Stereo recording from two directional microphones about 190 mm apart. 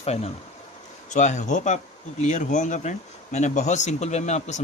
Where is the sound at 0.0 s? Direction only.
35° left (ahead or behind).